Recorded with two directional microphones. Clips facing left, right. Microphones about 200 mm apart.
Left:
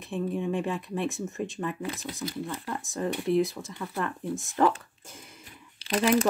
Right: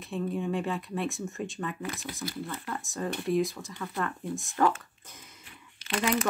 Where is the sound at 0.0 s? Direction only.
20° left (ahead or behind).